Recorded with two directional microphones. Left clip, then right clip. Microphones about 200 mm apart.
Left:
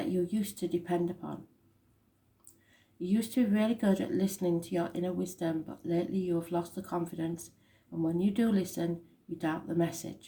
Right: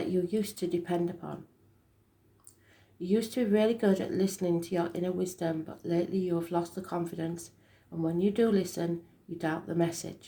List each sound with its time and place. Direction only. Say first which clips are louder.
0.3 s speech: right 3 dB; 25° right (ahead or behind)
3.0 s speech: right 2 dB; 25° right (ahead or behind)